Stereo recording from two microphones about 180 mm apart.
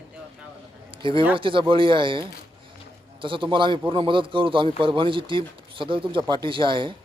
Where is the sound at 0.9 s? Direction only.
30° right (ahead or behind).